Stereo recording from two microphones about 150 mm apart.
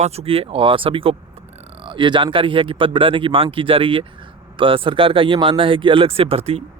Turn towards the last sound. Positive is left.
turn(degrees=-40)  # may be behind; listen again after turning